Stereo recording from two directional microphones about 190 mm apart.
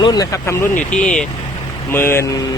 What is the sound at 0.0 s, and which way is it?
Speech, 20° left (ahead or behind).